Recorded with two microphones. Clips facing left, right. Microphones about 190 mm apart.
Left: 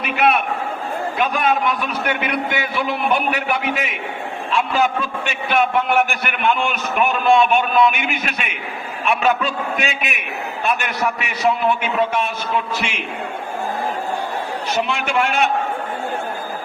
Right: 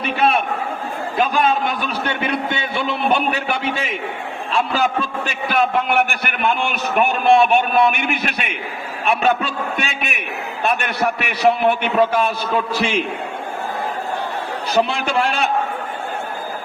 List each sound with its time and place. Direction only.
0.0 s a man's voice: 30° right (ahead or behind)
11.4 s a man's voice: 65° right (ahead or behind)
11.9 s a man's voice: 35° right (ahead or behind)
14.7 s a man's voice: 35° right (ahead or behind)